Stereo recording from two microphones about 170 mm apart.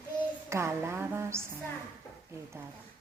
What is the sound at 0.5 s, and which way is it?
Speech, 15° right (ahead or behind).